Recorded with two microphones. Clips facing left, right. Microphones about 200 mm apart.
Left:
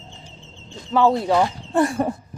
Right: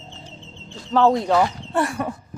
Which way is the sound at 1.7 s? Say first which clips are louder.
Left 7 dB; 25° left (ahead or behind).